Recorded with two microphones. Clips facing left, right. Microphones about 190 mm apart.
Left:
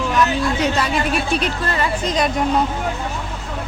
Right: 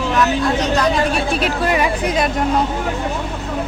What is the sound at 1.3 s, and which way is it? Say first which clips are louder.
Speech: right 4 dB; 5° right (ahead or behind).